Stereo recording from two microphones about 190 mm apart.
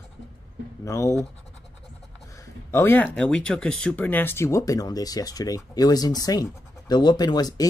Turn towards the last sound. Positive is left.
turn(degrees=20)  # may be behind; listen again after turning